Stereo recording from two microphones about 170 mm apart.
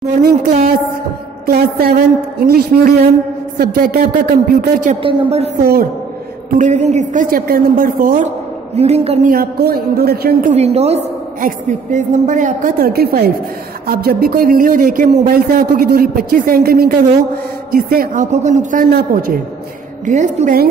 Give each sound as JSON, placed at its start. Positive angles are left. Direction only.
{"t": 1.4, "sound": "speech", "side_deg": -65}
{"t": 5.0, "sound": "a woman's voice", "side_deg": -35}
{"t": 5.6, "sound": "speech", "side_deg": -65}
{"t": 6.5, "sound": "a woman's voice", "side_deg": -45}
{"t": 8.7, "sound": "a woman's voice", "side_deg": -40}
{"t": 9.3, "sound": "speech", "side_deg": -60}
{"t": 10.5, "sound": "a woman's voice", "side_deg": -40}
{"t": 20.1, "sound": "a woman's voice", "side_deg": -45}